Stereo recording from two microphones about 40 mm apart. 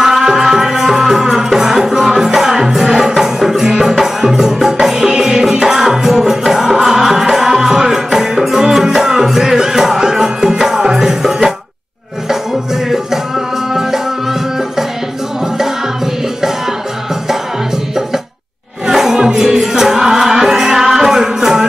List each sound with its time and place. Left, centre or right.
0.0 s music: centre
18.9 s music: centre